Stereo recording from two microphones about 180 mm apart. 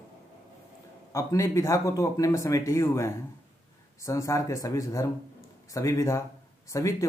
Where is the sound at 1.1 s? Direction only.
15° left (ahead or behind).